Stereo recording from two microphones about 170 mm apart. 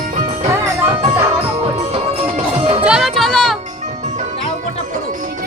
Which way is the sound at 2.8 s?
5° right (ahead or behind).